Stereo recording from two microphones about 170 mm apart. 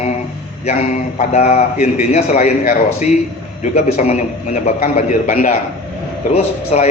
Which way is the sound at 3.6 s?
40° left (ahead or behind).